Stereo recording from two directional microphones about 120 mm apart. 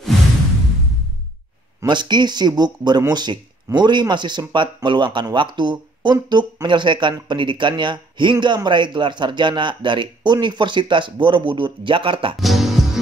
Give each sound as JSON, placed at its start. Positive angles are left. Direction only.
{"t": 1.9, "sound": "speech", "side_deg": -40}
{"t": 12.4, "sound": "music", "side_deg": 0}